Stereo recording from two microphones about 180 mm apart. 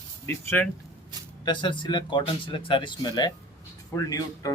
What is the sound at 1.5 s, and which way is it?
Speech, 25° left (ahead or behind).